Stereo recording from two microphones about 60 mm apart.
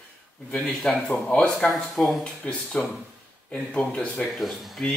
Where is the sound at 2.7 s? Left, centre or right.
Centre.